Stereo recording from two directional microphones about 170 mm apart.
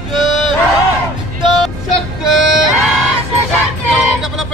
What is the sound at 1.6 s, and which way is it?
Music, centre (ahead or behind).